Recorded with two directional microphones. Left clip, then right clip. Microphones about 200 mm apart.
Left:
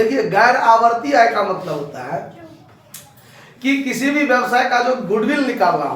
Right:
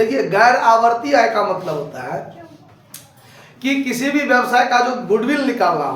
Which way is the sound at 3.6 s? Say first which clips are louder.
Left 1 dB; 25° right (ahead or behind).